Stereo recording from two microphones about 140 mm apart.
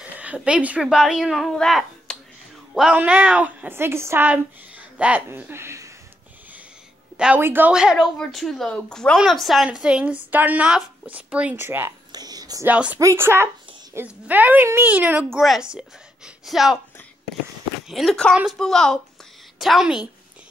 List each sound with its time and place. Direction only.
0.0 s a woman's voice: 10° right (ahead or behind)
7.2 s a woman's voice: 10° right (ahead or behind)
12.1 s a sound: 30° right (ahead or behind)
12.6 s a woman's voice: 10° right (ahead or behind)
15.2 s speech: centre (ahead or behind)
17.8 s speech: centre (ahead or behind)